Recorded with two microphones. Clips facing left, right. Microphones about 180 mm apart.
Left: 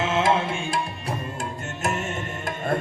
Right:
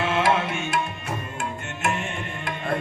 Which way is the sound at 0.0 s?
25° left (ahead or behind).